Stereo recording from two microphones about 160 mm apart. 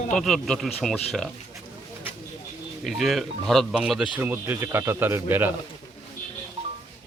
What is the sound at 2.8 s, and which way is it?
Speech, centre (ahead or behind).